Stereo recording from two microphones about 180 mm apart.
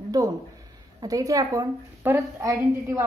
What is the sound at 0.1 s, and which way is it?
A woman's voice, 20° right (ahead or behind).